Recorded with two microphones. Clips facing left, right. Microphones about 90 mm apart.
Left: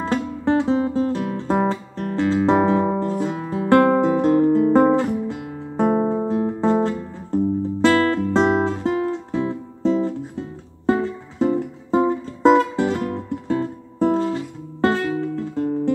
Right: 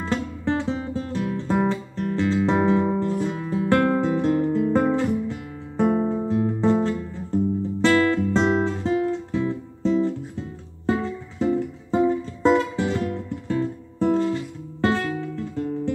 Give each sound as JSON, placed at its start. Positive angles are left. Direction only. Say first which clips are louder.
{"t": 0.0, "sound": "music", "louder": "left 4 dB", "side_deg": 40}
{"t": 3.0, "sound": "guitar", "louder": "left 2 dB", "side_deg": 40}
{"t": 7.8, "sound": "music", "louder": "left 2 dB", "side_deg": 40}